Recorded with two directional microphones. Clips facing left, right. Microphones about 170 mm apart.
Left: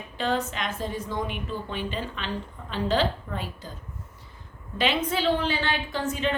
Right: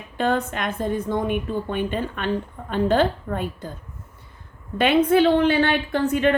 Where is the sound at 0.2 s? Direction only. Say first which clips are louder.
Right 5 dB; 55° right (ahead or behind).